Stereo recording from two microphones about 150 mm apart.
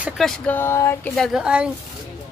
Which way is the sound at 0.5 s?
15° left (ahead or behind).